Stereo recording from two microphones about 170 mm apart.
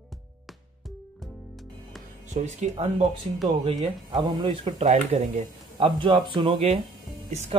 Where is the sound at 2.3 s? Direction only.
40° right (ahead or behind).